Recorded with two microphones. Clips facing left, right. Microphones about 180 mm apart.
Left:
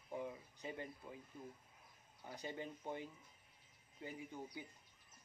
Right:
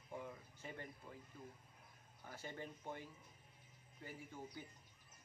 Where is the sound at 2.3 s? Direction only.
20° left (ahead or behind).